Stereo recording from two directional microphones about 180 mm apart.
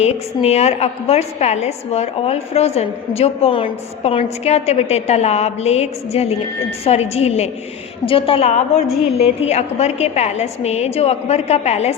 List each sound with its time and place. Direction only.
0.0 s a woman's voice: 35° left (ahead or behind)